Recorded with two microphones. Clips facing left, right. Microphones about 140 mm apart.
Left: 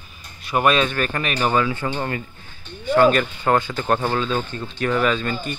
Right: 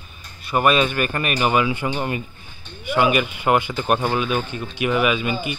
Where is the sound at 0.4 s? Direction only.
Centre (ahead or behind).